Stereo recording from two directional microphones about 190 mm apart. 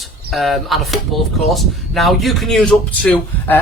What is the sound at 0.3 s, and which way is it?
Speech, centre (ahead or behind).